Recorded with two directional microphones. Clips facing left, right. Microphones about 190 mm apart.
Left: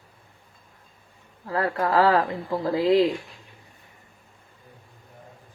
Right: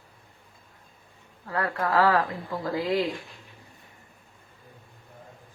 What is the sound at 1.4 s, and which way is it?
Speech, 25° left (ahead or behind).